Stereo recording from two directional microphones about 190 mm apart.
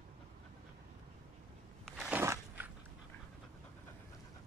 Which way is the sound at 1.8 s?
Centre (ahead or behind).